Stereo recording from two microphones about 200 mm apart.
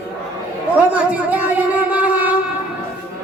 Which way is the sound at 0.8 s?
5° right (ahead or behind).